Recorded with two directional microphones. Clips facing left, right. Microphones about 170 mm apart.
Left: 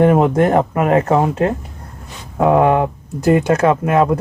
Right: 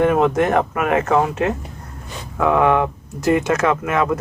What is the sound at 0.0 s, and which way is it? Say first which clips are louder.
Speech: left 3 dB; 35° left (ahead or behind).